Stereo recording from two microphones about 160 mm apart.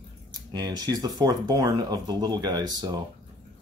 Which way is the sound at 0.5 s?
25° right (ahead or behind).